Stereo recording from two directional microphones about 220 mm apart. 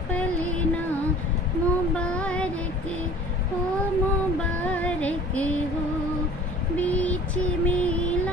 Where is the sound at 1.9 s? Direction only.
5° left (ahead or behind).